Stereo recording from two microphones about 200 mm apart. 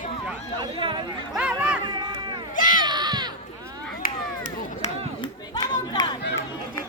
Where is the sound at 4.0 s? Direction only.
40° left (ahead or behind).